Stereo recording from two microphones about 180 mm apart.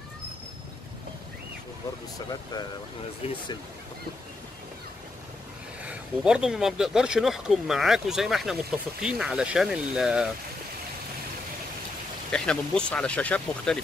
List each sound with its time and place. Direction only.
3.2 s speech: 35° left (ahead or behind)
5.9 s speech: 5° right (ahead or behind)
12.3 s speech: 5° left (ahead or behind)